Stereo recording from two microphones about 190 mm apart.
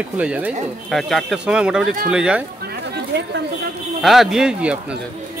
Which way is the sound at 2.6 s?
60° right (ahead or behind).